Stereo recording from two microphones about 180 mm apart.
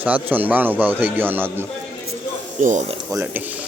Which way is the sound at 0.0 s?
10° right (ahead or behind).